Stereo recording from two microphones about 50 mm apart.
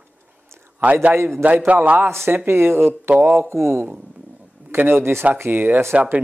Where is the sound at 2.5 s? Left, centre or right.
Right.